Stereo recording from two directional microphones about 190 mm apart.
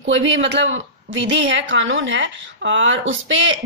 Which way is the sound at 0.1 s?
80° right.